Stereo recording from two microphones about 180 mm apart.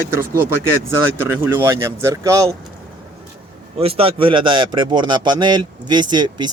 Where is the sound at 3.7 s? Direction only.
35° right (ahead or behind).